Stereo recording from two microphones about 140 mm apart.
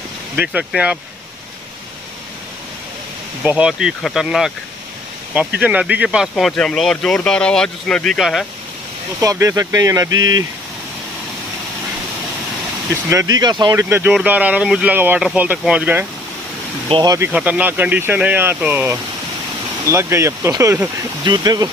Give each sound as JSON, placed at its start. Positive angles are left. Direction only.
{"t": 0.4, "sound": "speech", "side_deg": -5}
{"t": 3.4, "sound": "speech", "side_deg": -5}
{"t": 9.2, "sound": "speech", "side_deg": -20}
{"t": 12.9, "sound": "speech", "side_deg": -20}
{"t": 13.7, "sound": "speech", "side_deg": -15}
{"t": 17.0, "sound": "speech", "side_deg": -25}
{"t": 17.3, "sound": "speech", "side_deg": -10}